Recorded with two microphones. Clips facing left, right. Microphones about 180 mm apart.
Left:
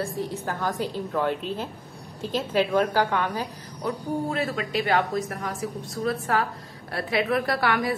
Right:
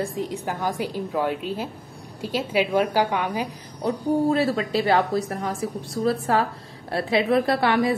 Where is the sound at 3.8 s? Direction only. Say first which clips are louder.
Right 6 dB; 35° right (ahead or behind).